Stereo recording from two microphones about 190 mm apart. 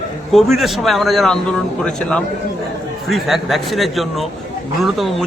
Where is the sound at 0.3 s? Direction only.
Centre (ahead or behind).